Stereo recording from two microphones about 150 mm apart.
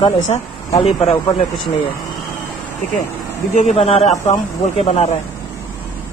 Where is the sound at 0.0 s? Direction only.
45° left (ahead or behind).